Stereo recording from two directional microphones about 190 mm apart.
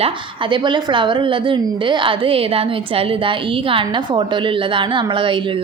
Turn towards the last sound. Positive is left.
turn(degrees=-25)  # may be behind; listen again after turning